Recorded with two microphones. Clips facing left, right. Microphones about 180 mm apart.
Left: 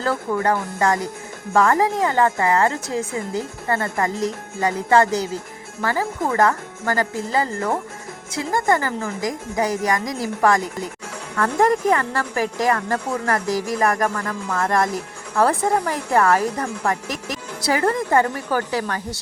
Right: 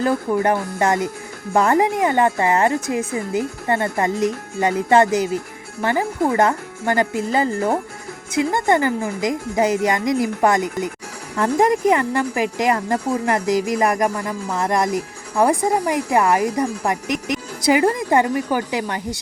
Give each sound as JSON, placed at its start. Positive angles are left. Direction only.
{"t": 0.0, "sound": "a woman's voice", "side_deg": -15}